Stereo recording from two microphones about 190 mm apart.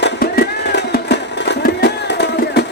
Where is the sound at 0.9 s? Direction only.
60° left (ahead or behind).